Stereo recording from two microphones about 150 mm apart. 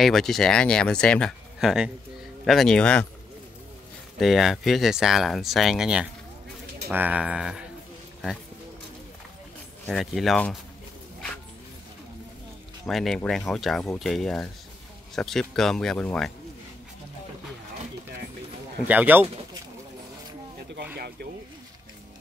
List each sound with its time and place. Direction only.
0.0 s speech: centre (ahead or behind)
4.2 s speech: centre (ahead or behind)
9.8 s speech: centre (ahead or behind)
12.8 s speech: centre (ahead or behind)
18.9 s speech: 10° right (ahead or behind)
20.7 s a sound: 90° right